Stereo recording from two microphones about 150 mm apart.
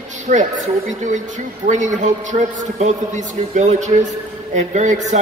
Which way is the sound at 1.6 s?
55° right (ahead or behind).